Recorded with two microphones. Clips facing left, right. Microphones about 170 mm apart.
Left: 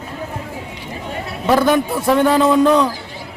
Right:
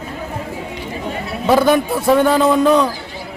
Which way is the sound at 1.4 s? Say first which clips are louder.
Right 1 dB; 10° right (ahead or behind).